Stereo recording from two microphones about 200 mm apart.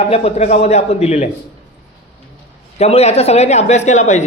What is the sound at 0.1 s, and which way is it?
A man's voice, 30° left (ahead or behind).